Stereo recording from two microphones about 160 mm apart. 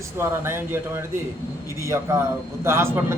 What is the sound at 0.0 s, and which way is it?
A man's voice, 15° right (ahead or behind).